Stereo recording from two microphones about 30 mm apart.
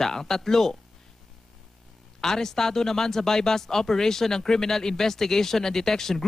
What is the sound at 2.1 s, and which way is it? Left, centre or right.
A man's voice, centre.